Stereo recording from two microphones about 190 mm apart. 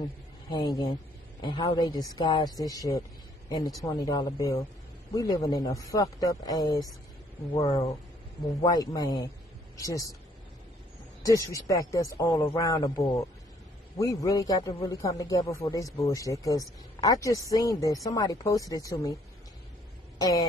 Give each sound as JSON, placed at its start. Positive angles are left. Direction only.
{"t": 0.5, "sound": "speech", "side_deg": 20}
{"t": 8.5, "sound": "a man's voice", "side_deg": 20}
{"t": 11.2, "sound": "a man's voice", "side_deg": 15}
{"t": 13.9, "sound": "a man's voice", "side_deg": 15}
{"t": 20.2, "sound": "a sound", "side_deg": 20}